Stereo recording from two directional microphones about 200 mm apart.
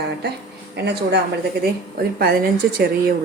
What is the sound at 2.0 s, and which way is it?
Speech, 50° right (ahead or behind).